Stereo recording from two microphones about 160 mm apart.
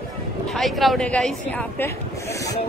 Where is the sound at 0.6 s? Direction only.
Centre (ahead or behind).